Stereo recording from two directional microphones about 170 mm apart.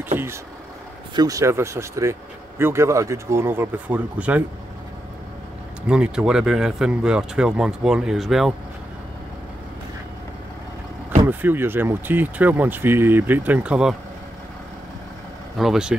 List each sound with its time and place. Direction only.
0.1 s vehicle: 10° right (ahead or behind)
1.1 s speech: 20° right (ahead or behind)
5.9 s speech: 5° right (ahead or behind)
11.2 s speech: 10° right (ahead or behind)
15.5 s speech: centre (ahead or behind)